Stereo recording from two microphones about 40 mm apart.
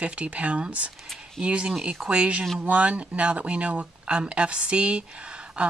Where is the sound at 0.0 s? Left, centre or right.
Right.